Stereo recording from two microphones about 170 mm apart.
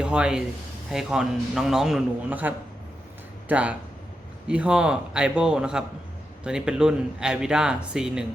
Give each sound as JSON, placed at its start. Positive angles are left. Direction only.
{"t": 0.0, "sound": "speech", "side_deg": -5}